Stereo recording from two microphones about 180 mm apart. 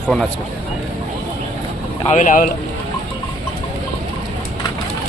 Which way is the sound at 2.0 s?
45° left (ahead or behind).